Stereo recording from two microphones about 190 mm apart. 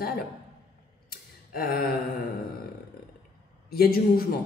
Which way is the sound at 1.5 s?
50° left (ahead or behind).